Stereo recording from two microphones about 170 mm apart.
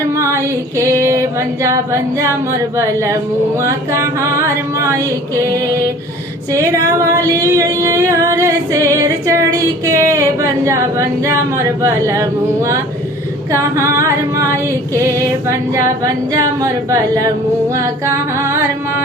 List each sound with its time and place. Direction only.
0.1 s female singing: 15° right (ahead or behind)
6.5 s female singing: 20° right (ahead or behind)